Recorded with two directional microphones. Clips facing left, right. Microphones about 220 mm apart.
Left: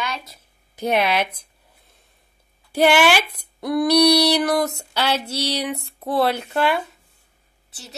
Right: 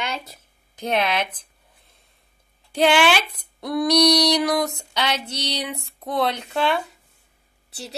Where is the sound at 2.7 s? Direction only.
10° left (ahead or behind).